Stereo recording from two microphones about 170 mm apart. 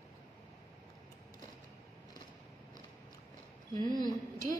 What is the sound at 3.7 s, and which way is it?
Speech, 25° left (ahead or behind).